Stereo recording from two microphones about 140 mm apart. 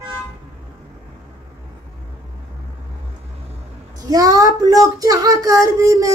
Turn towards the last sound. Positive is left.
turn(degrees=-25)  # may be behind; listen again after turning